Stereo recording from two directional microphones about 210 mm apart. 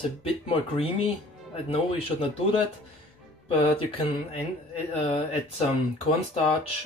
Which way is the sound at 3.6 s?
25° left (ahead or behind).